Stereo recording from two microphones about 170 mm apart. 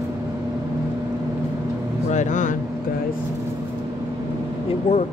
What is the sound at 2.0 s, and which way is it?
Vehicle, 45° left (ahead or behind).